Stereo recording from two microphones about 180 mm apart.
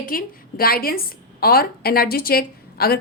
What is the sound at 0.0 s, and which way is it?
A woman's voice, 50° left (ahead or behind).